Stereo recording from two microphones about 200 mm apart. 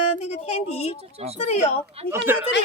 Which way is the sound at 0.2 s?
35° left (ahead or behind).